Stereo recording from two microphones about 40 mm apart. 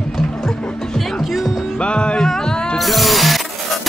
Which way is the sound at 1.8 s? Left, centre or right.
Left.